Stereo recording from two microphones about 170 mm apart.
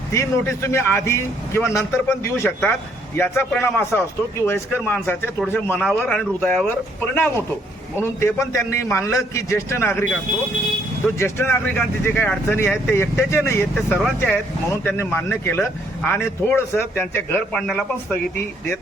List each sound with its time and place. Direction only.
0.1 s speech: 15° left (ahead or behind)
11.2 s speech: 15° left (ahead or behind)
13.7 s speech: centre (ahead or behind)
14.2 s speech: 10° left (ahead or behind)